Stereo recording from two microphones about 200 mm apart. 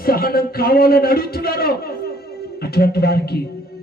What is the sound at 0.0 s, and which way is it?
A man's voice, 45° left (ahead or behind).